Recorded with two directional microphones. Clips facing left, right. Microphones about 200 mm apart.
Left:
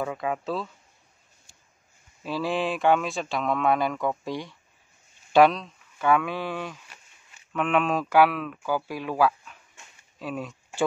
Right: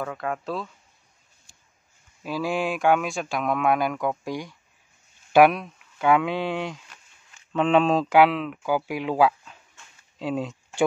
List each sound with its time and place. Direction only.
0.0 s speech: 5° left (ahead or behind)
2.2 s speech: 10° right (ahead or behind)
5.3 s speech: 10° right (ahead or behind); by 10.5 s 25° right (ahead or behind)